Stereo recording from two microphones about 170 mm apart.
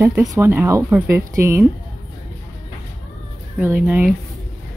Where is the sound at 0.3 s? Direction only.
15° right (ahead or behind).